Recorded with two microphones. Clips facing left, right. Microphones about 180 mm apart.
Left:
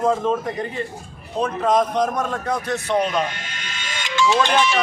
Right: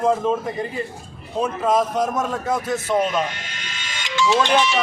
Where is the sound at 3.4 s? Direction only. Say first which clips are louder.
Left 2 dB; 50° left (ahead or behind).